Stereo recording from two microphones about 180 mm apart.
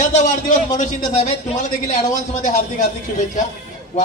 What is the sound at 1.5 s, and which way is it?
A man's voice, 40° left (ahead or behind).